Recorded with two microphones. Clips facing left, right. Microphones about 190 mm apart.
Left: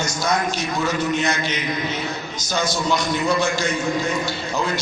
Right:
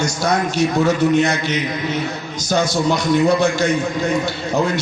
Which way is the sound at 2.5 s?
60° right (ahead or behind).